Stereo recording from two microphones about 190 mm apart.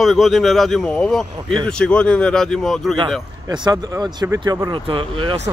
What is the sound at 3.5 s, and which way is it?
Speech, 20° right (ahead or behind).